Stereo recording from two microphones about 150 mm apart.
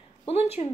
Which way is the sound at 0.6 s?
45° left (ahead or behind).